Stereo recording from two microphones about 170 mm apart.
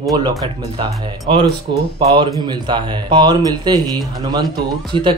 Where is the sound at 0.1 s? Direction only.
25° right (ahead or behind).